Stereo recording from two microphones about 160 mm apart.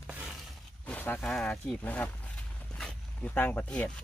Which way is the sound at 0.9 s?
10° left (ahead or behind).